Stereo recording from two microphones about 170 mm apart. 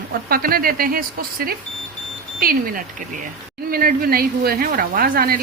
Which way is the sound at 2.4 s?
60° right (ahead or behind).